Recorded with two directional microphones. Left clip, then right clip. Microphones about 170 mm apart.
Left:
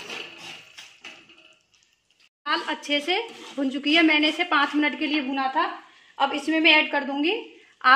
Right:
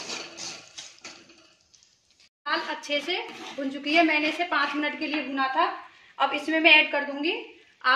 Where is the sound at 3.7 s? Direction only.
55° left (ahead or behind).